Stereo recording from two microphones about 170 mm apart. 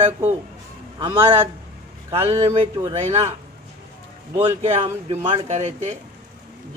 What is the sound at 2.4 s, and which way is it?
Speech, 35° right (ahead or behind).